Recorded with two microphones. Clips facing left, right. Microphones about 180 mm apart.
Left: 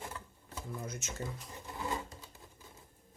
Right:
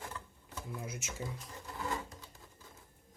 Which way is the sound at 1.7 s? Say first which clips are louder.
Left 1 dB; 20° left (ahead or behind).